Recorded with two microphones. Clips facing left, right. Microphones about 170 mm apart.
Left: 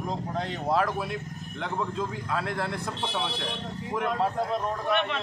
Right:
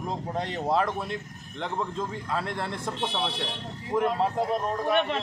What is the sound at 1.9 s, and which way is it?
Speech, centre (ahead or behind).